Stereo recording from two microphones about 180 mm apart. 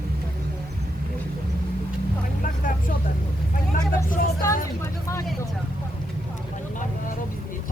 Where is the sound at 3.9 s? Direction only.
50° left (ahead or behind).